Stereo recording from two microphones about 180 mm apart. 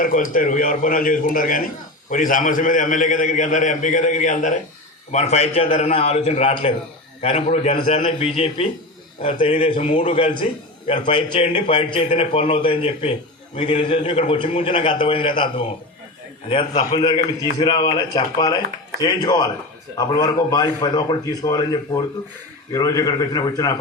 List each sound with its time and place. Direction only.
0.0 s a man's voice: 50° left (ahead or behind); by 9.7 s 30° left (ahead or behind)
9.7 s a man's voice: 40° left (ahead or behind)
11.0 s a man's voice: 30° left (ahead or behind)